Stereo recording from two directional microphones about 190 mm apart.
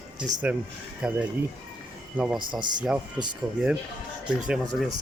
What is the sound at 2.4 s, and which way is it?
Speech, 25° right (ahead or behind).